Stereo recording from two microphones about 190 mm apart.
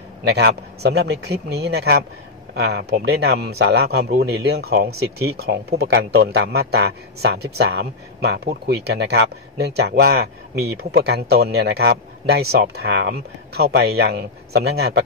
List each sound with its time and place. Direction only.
0.3 s a man's voice: 60° right (ahead or behind)